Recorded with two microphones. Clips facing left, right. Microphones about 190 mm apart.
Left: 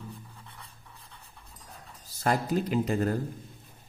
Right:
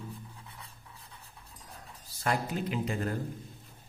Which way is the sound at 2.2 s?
40° left (ahead or behind).